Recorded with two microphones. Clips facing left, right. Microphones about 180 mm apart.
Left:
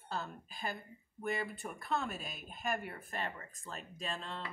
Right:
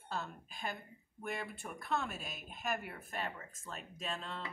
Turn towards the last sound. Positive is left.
turn(degrees=0)  # may be behind; listen again after turning